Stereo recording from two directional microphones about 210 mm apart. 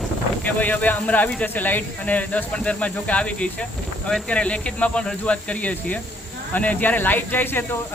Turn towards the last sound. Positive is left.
turn(degrees=10)  # may be behind; listen again after turning